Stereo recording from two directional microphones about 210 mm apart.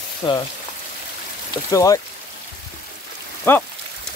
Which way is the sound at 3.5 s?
10° left (ahead or behind).